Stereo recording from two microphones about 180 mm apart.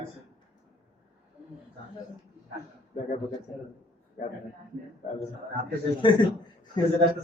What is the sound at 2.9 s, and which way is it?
Speech, 35° left (ahead or behind).